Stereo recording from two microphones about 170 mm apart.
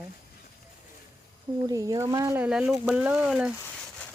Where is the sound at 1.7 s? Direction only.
20° right (ahead or behind).